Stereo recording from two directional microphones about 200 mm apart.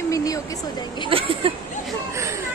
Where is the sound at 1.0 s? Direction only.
25° right (ahead or behind).